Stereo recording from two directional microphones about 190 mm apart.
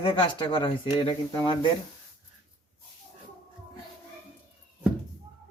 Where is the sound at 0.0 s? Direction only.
30° left (ahead or behind).